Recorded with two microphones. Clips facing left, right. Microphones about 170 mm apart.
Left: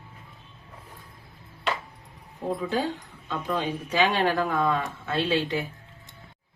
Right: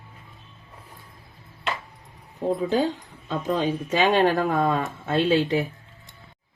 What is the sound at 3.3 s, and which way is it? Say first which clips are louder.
Speech: right 4 dB; 45° right (ahead or behind).